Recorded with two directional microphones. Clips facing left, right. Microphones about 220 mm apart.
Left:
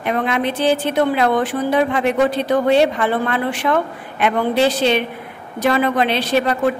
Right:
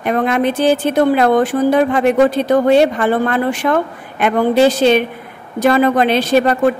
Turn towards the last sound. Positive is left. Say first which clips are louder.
# right 5 dB
turn(degrees=-45)  # may be behind; listen again after turning